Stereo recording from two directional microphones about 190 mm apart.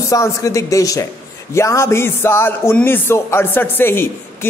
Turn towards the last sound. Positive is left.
turn(degrees=10)  # may be behind; listen again after turning